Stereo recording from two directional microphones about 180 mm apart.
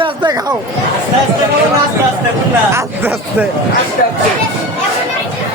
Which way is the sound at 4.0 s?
50° left (ahead or behind).